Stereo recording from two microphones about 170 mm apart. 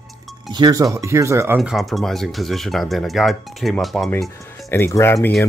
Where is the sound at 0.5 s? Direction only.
25° right (ahead or behind).